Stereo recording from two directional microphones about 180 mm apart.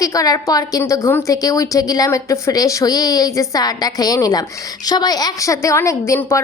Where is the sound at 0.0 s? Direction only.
20° left (ahead or behind).